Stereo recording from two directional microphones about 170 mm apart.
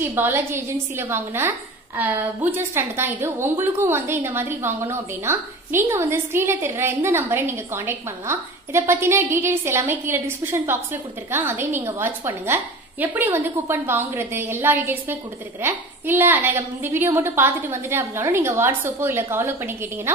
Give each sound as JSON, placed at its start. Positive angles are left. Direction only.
{"t": 0.0, "sound": "a woman's voice", "side_deg": -15}